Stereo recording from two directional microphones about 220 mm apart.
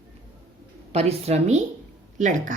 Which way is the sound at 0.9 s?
30° right (ahead or behind).